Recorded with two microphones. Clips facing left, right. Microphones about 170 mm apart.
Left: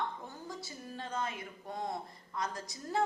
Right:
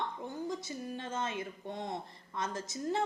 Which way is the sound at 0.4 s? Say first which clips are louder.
Right 7 dB; 20° right (ahead or behind).